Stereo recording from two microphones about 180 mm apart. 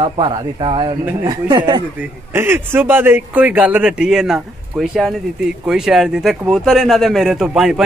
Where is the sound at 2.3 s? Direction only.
10° right (ahead or behind).